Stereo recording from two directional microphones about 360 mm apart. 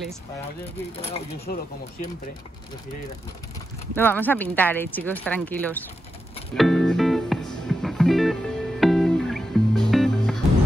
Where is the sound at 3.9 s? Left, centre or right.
Centre.